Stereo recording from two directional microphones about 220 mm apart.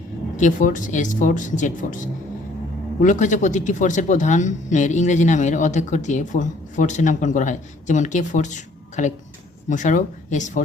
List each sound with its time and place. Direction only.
0.3 s speech: 35° left (ahead or behind)